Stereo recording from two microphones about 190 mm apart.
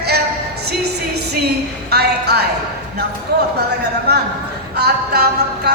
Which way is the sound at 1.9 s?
60° right (ahead or behind).